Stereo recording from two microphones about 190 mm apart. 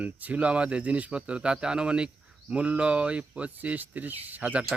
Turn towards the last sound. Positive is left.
turn(degrees=-10)  # may be behind; listen again after turning